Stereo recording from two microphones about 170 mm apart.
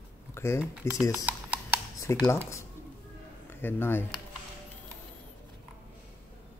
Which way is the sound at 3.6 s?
10° left (ahead or behind).